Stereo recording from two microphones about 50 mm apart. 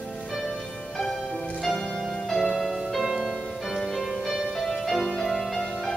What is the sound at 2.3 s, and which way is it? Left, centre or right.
Music, centre.